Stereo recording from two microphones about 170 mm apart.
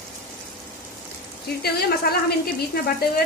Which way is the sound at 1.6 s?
65° left (ahead or behind).